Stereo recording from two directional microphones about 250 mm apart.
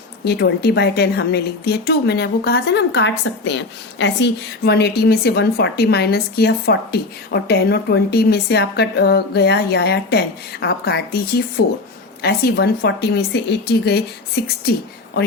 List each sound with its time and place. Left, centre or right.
0.3 s a woman's voice: left